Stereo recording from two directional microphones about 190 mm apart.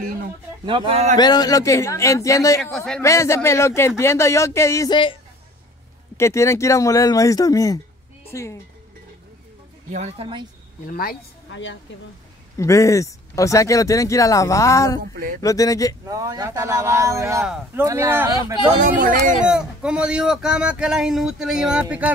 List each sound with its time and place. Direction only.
0.7 s speech: 30° right (ahead or behind)
1.1 s speech: 20° left (ahead or behind)
2.7 s speech: 5° left (ahead or behind)
3.0 s speech: 15° left (ahead or behind)
6.1 s speech: 15° left (ahead or behind)
9.8 s speech: 35° right (ahead or behind)
10.9 s a woman's voice: 50° left (ahead or behind)
11.5 s speech: 75° left (ahead or behind)
12.5 s speech: 15° left (ahead or behind)
15.0 s speech: 50° right (ahead or behind)
15.4 s speech: 15° left (ahead or behind)
16.1 s a man's voice: 20° right (ahead or behind)
18.8 s speech: 45° right (ahead or behind)
19.5 s speech: 5° right (ahead or behind)